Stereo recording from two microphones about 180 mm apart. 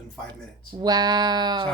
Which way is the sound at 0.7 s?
20° right (ahead or behind).